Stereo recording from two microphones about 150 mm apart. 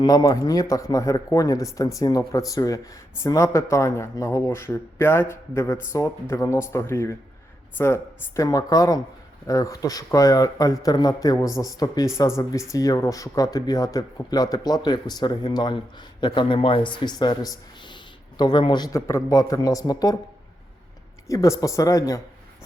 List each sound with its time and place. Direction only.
0.0 s a woman's voice: 25° left (ahead or behind)
21.2 s speech: 20° left (ahead or behind)